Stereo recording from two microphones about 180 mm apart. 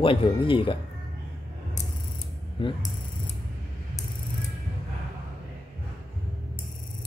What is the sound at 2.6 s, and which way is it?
Speech, 30° left (ahead or behind).